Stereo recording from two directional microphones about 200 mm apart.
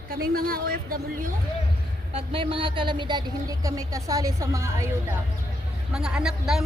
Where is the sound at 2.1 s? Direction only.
30° right (ahead or behind).